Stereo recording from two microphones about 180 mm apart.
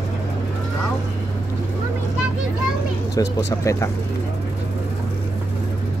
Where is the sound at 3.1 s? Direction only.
15° left (ahead or behind).